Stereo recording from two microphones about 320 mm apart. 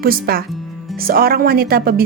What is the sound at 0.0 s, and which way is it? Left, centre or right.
Speech, right.